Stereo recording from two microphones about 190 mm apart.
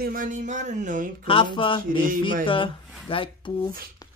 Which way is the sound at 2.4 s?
25° left (ahead or behind).